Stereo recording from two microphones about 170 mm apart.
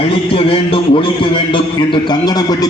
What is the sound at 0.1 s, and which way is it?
A man's voice, 35° left (ahead or behind).